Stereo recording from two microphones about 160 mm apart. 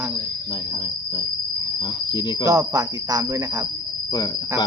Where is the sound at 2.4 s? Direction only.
20° right (ahead or behind).